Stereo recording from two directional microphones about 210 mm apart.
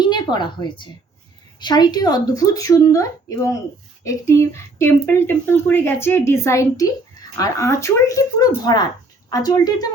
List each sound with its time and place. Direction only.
0.0 s a woman's voice: 20° left (ahead or behind)